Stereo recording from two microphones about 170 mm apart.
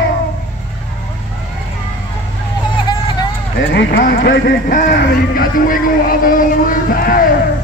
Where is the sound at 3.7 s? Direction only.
85° left; by 4.7 s 65° left (ahead or behind).